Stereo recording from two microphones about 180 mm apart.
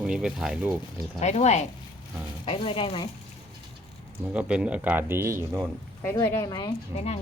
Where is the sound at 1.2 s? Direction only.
40° left (ahead or behind).